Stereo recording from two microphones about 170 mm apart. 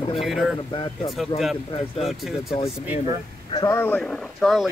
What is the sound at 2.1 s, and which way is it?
Speech, centre (ahead or behind).